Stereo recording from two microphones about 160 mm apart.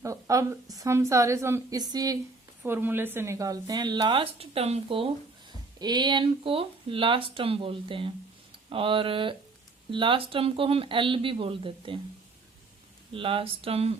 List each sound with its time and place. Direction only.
0.0 s a woman's voice: 20° right (ahead or behind)
2.6 s a woman's voice: 15° right (ahead or behind); by 5.0 s 35° right (ahead or behind)
5.8 s speech: 25° right (ahead or behind)
13.1 s speech: 35° right (ahead or behind)